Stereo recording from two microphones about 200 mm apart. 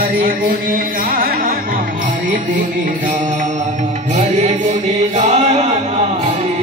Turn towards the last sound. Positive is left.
turn(degrees=-35)  # may be behind; listen again after turning